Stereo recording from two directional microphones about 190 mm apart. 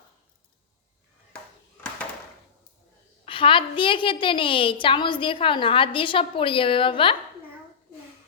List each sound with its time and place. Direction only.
3.2 s a woman's voice: 25° left (ahead or behind)